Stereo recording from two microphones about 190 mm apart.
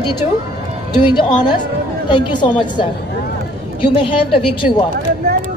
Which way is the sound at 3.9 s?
25° left (ahead or behind).